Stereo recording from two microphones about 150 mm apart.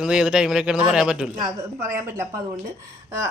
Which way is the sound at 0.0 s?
5° right (ahead or behind).